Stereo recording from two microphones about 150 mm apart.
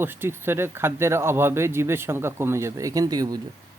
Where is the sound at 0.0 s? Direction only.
15° right (ahead or behind).